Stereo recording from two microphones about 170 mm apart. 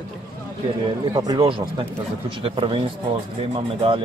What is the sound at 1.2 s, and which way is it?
Speech, 25° right (ahead or behind).